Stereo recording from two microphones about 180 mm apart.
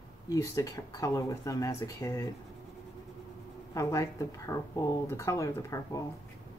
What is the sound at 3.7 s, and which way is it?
Speech, 15° left (ahead or behind).